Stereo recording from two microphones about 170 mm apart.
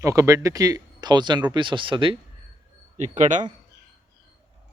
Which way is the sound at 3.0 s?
45° right (ahead or behind).